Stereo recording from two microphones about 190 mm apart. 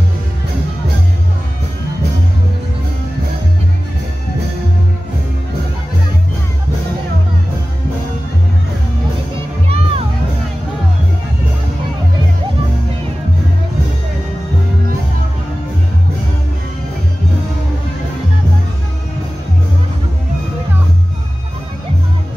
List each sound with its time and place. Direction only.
9.7 s music: 30° right (ahead or behind)